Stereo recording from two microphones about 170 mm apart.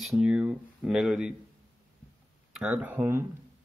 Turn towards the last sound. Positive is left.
turn(degrees=-15)  # may be behind; listen again after turning